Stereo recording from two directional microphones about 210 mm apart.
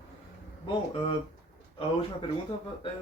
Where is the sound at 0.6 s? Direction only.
25° left (ahead or behind).